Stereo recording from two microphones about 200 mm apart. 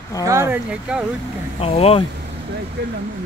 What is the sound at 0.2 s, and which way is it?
Speech, 15° right (ahead or behind).